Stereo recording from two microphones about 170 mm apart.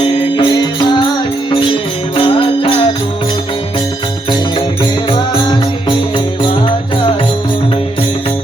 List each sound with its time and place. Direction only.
0.3 s music: 30° left (ahead or behind)
2.1 s music: 30° left (ahead or behind)
6.1 s music: 30° left (ahead or behind)